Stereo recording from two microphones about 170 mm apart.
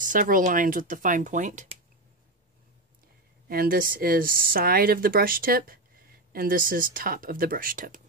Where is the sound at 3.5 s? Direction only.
60° right (ahead or behind).